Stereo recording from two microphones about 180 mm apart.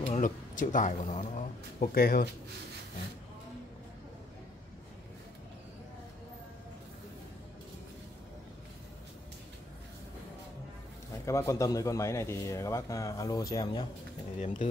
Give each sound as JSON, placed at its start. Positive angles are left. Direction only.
{"t": 0.0, "sound": "speech", "side_deg": 50}
{"t": 1.8, "sound": "speech", "side_deg": 55}
{"t": 11.2, "sound": "a man's voice", "side_deg": 15}
{"t": 14.4, "sound": "speech", "side_deg": 45}